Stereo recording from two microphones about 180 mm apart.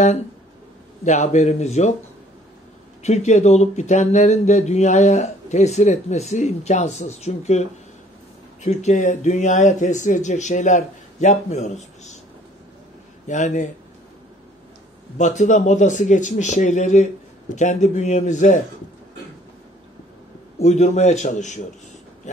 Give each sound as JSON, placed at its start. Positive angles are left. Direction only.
{"t": 1.0, "sound": "speech", "side_deg": 40}
{"t": 3.0, "sound": "speech", "side_deg": 40}
{"t": 8.6, "sound": "speech", "side_deg": 40}
{"t": 13.3, "sound": "speech", "side_deg": 45}
{"t": 15.1, "sound": "speech", "side_deg": 40}
{"t": 20.5, "sound": "speech", "side_deg": 40}